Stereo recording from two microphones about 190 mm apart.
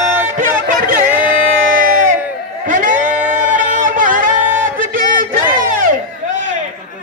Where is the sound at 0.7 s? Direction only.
50° right (ahead or behind).